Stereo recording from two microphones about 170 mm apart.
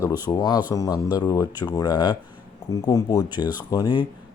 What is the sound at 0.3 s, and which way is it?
A woman's voice, 25° left (ahead or behind).